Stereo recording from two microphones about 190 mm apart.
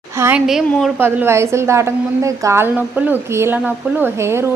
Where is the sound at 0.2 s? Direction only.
10° right (ahead or behind).